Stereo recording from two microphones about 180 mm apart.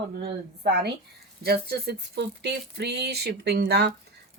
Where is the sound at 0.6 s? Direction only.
65° right (ahead or behind).